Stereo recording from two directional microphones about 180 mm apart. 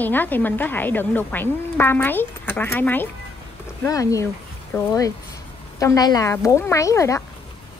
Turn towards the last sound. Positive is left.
turn(degrees=15)  # may be behind; listen again after turning